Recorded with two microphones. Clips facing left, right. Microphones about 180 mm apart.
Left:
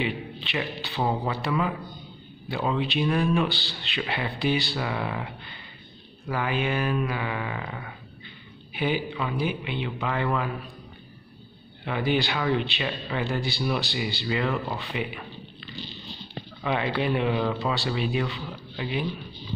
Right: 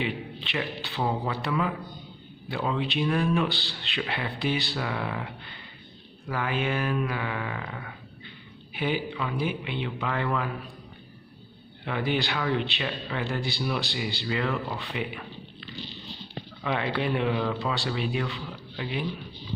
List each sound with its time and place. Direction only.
0.0 s a man's voice: 5° left (ahead or behind)
1.0 s speech: 15° left (ahead or behind)
2.5 s speech: 5° left (ahead or behind)
11.8 s speech: 5° left (ahead or behind)
16.6 s speech: 5° left (ahead or behind)